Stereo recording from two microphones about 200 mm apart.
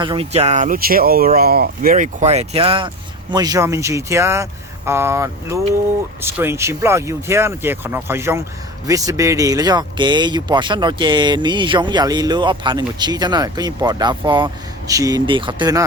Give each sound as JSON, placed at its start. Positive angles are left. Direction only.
{"t": 0.0, "sound": "speech", "side_deg": -25}